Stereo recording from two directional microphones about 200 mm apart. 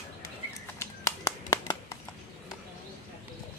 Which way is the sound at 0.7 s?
15° left (ahead or behind).